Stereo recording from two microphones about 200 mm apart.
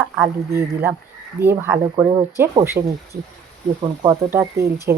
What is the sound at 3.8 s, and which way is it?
Speech, 20° right (ahead or behind).